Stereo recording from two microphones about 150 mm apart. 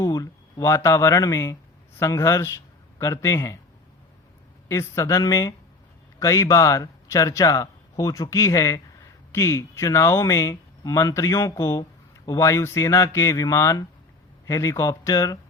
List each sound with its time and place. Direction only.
0.0 s speech: 20° left (ahead or behind)
4.7 s speech: 20° left (ahead or behind)